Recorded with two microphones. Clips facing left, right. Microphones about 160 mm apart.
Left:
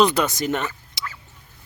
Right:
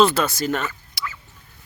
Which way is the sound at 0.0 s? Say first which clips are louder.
Right 1 dB; 15° left (ahead or behind).